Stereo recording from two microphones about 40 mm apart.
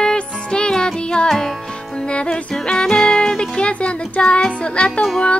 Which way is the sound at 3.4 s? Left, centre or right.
Left.